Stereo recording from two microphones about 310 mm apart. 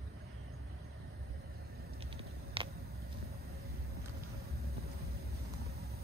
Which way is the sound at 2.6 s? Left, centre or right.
Centre.